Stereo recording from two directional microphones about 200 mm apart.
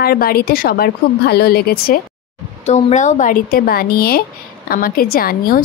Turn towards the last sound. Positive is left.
turn(degrees=45)  # may be behind; listen again after turning